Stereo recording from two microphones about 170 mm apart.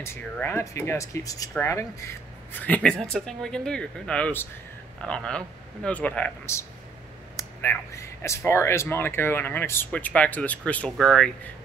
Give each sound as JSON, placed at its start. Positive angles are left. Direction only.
{"t": 0.0, "sound": "speech", "side_deg": 15}